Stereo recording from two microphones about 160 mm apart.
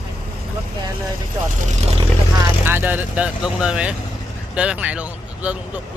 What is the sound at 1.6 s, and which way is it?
Speech, 40° right (ahead or behind).